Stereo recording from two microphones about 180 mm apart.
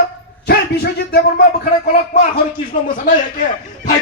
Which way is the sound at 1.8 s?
40° left (ahead or behind).